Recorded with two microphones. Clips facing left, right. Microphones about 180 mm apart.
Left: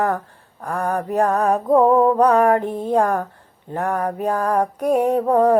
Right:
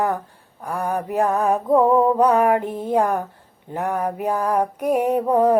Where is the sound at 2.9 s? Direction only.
20° right (ahead or behind).